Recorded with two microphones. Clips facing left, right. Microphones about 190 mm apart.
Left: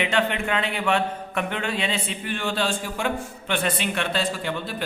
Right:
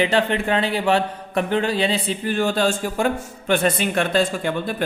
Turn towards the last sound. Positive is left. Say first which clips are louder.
# right 6 dB
turn(degrees=-50)  # may be behind; listen again after turning